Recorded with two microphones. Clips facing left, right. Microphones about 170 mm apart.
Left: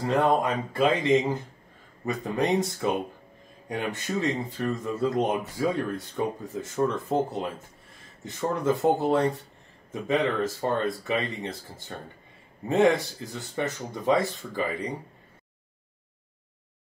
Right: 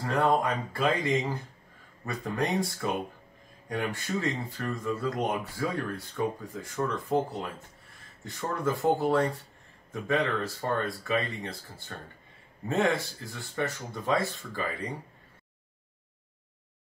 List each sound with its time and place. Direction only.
0.3 s speech: 20° left (ahead or behind)
2.0 s speech: 20° left (ahead or behind)